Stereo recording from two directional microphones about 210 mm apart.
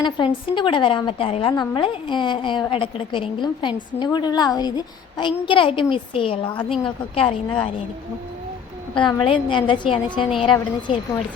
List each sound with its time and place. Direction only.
0.0 s a woman's voice: 25° left (ahead or behind)
9.0 s a woman's voice: 20° left (ahead or behind)